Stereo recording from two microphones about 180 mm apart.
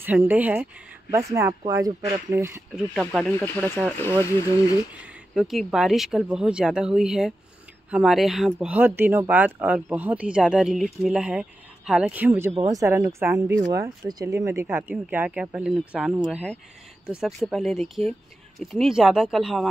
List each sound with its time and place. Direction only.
0.0 s speech: 10° right (ahead or behind)
2.7 s speech: centre (ahead or behind)
5.3 s speech: centre (ahead or behind)